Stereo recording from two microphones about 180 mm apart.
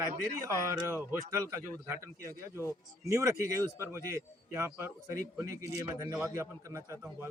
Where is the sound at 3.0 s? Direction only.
15° right (ahead or behind).